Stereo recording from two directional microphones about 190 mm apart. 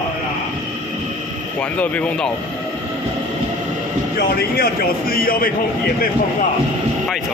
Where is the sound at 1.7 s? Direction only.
10° left (ahead or behind).